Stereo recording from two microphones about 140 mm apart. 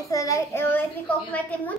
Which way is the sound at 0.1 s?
25° left (ahead or behind).